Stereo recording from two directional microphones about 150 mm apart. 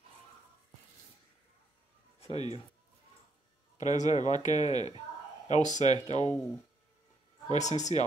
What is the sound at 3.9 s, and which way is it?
Speech, 55° left (ahead or behind).